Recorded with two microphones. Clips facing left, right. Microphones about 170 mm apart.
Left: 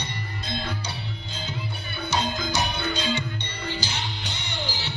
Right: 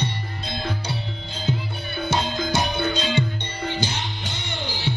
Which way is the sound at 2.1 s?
55° right (ahead or behind).